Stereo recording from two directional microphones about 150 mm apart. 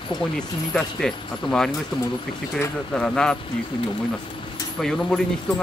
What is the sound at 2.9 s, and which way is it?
Speech, 5° left (ahead or behind).